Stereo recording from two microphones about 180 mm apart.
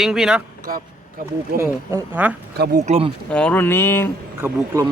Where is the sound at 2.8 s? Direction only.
35° right (ahead or behind).